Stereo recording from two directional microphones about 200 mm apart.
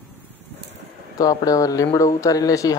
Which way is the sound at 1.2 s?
15° left (ahead or behind).